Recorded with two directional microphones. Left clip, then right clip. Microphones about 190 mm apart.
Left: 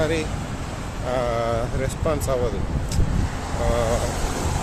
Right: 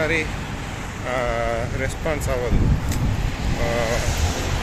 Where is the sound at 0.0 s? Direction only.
10° left (ahead or behind).